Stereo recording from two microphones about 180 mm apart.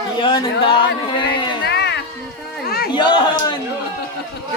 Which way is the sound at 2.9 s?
25° left (ahead or behind).